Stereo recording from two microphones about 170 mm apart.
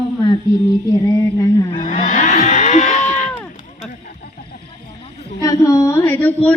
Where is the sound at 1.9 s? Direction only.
50° left (ahead or behind).